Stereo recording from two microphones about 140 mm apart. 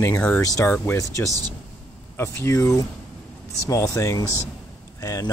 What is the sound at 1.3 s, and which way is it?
Speech, 25° right (ahead or behind).